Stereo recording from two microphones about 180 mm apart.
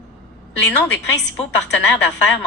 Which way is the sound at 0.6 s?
80° left.